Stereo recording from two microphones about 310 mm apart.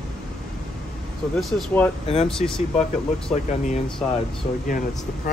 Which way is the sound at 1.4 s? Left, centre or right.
Centre.